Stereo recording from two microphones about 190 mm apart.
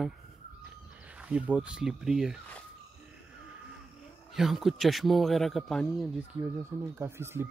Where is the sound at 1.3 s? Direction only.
5° right (ahead or behind).